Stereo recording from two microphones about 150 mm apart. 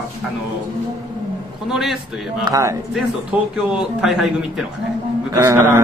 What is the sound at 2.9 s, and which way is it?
A man's voice, 5° right (ahead or behind).